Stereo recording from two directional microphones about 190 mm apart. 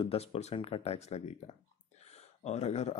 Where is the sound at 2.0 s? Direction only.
35° left (ahead or behind).